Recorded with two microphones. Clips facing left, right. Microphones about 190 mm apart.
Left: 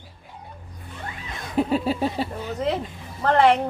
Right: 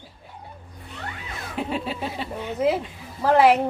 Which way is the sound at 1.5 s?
40° left (ahead or behind).